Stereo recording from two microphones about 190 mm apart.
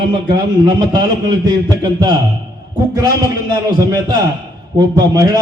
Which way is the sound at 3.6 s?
20° right (ahead or behind).